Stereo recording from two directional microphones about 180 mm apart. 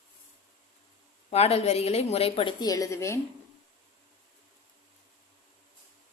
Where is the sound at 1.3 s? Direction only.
35° left (ahead or behind); by 3.1 s 15° left (ahead or behind).